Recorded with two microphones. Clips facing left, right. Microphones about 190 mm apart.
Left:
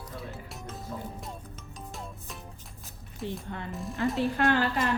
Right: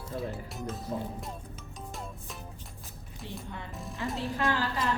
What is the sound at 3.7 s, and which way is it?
Speech, centre (ahead or behind).